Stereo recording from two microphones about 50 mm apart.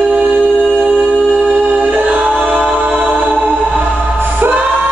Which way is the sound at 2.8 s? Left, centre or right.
Right.